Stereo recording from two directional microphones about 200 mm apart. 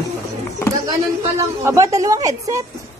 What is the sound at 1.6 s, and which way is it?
A woman's voice, 15° right (ahead or behind).